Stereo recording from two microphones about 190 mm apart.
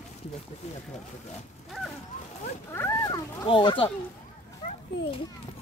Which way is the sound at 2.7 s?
15° left (ahead or behind).